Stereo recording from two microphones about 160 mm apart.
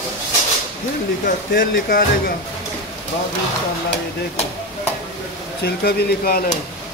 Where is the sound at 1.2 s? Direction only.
65° left (ahead or behind).